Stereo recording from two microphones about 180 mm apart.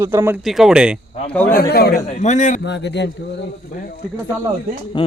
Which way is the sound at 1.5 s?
60° left (ahead or behind).